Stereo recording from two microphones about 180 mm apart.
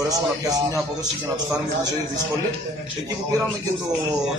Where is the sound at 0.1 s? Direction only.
20° right (ahead or behind).